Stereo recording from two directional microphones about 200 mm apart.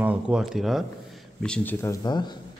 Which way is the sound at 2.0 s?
20° left (ahead or behind).